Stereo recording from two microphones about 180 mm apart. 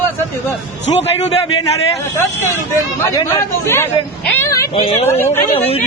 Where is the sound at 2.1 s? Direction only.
15° left (ahead or behind).